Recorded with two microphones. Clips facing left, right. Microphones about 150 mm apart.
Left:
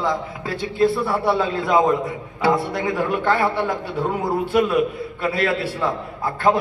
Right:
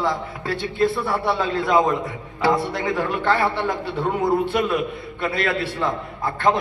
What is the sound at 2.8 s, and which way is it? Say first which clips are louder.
A man's voice: left 1 dB; 10° left (ahead or behind).